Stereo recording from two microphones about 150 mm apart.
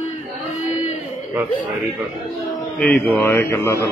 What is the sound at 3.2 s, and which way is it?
Mantra, 15° left (ahead or behind).